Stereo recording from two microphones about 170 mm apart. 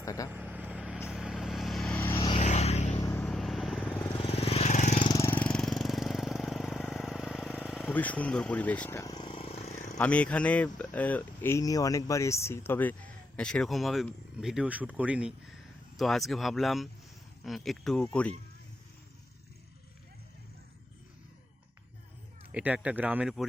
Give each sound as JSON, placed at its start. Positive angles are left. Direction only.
{"t": 0.0, "sound": "speech", "side_deg": 20}
{"t": 0.3, "sound": "vehicle", "side_deg": -10}
{"t": 2.0, "sound": "vehicle", "side_deg": 15}
{"t": 2.2, "sound": "a sound", "side_deg": 30}
{"t": 3.2, "sound": "vehicle", "side_deg": 5}
{"t": 4.1, "sound": "vehicle", "side_deg": 35}
{"t": 4.9, "sound": "vehicle", "side_deg": 25}
{"t": 7.6, "sound": "a sound", "side_deg": 0}
{"t": 10.0, "sound": "speech", "side_deg": 5}
{"t": 22.5, "sound": "speech", "side_deg": -10}